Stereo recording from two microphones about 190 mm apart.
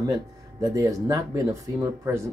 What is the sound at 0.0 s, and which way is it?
Speech, 20° right (ahead or behind).